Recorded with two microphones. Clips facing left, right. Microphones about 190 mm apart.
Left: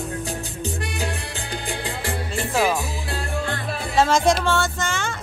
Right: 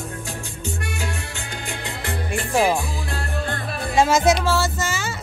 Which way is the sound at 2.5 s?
20° right (ahead or behind).